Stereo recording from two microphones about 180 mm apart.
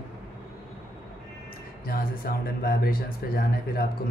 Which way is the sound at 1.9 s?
55° left (ahead or behind).